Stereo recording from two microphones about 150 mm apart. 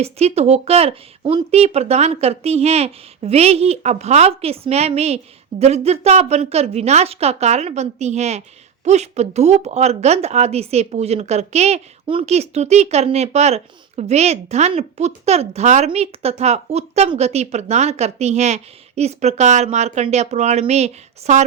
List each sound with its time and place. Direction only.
0.0 s speech: 45° right (ahead or behind)